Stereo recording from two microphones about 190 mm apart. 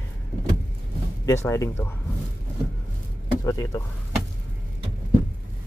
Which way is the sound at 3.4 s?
15° left (ahead or behind).